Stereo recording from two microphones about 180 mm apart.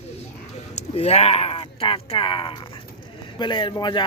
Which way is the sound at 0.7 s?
35° left (ahead or behind).